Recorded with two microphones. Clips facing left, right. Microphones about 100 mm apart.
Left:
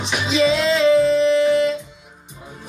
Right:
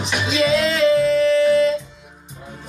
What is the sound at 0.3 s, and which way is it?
Music, 25° left (ahead or behind).